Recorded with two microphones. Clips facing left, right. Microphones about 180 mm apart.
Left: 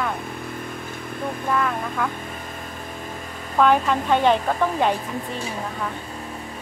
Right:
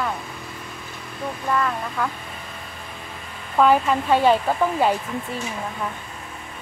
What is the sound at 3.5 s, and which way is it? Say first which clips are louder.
Speech: right 1 dB; 5° right (ahead or behind).